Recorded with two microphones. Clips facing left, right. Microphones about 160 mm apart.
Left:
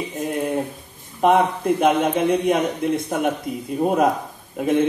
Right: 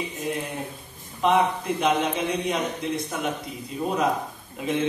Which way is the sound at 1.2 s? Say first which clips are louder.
Left 5 dB; 50° left (ahead or behind).